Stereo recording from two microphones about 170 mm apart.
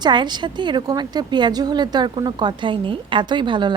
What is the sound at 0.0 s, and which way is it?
Speech, 25° right (ahead or behind).